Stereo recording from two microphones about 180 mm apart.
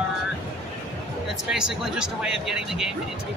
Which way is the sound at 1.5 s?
5° right (ahead or behind).